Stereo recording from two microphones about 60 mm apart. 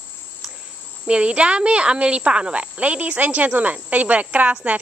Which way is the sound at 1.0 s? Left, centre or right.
Centre.